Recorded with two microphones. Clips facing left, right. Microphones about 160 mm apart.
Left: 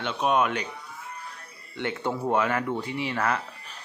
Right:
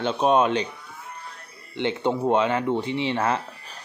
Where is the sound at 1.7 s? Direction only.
20° right (ahead or behind).